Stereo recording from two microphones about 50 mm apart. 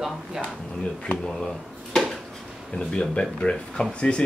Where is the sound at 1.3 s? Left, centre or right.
Centre.